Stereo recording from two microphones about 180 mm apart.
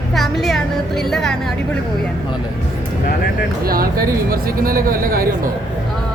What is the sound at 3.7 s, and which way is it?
Speech, 55° right (ahead or behind).